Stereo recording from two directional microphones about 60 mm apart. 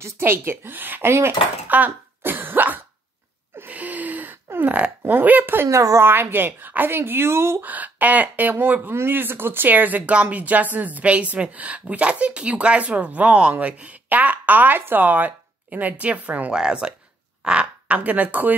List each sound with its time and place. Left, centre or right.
0.0 s speech: right
1.9 s cough: right
3.5 s gasp: right
4.6 s speech: right
5.7 s speech: right
6.0 s speech: right
7.6 s speech: right
16.5 s speech: centre; by 18.6 s right